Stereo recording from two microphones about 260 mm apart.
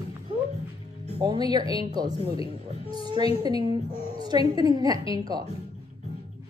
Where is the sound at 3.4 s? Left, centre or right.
Centre.